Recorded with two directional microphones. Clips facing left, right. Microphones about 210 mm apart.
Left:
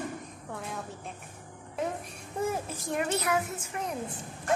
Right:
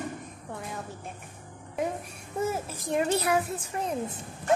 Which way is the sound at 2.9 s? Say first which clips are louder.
Right 4 dB; 30° right (ahead or behind).